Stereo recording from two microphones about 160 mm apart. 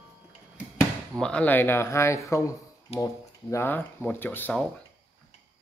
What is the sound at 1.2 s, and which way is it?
Speech, 10° left (ahead or behind).